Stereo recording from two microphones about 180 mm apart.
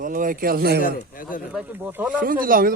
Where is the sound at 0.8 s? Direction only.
50° left (ahead or behind).